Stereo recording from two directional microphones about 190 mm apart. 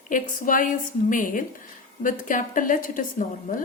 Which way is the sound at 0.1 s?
45° left (ahead or behind).